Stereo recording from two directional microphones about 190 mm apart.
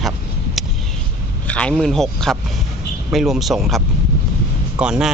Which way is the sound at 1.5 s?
5° left (ahead or behind).